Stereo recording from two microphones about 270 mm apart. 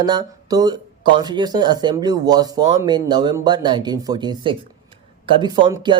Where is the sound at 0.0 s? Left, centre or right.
Centre.